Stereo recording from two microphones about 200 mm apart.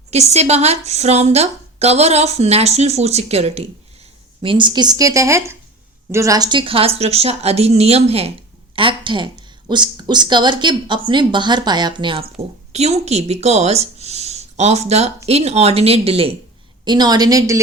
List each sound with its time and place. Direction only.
0.1 s a woman's voice: 35° right (ahead or behind); by 17.6 s 15° right (ahead or behind)